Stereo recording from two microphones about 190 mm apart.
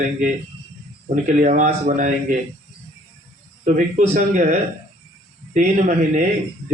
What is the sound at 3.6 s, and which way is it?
Speech, 40° right (ahead or behind).